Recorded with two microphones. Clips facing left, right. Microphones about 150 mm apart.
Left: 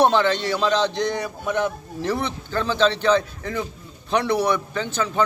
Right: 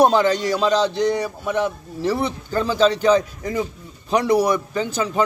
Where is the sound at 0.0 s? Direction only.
10° right (ahead or behind).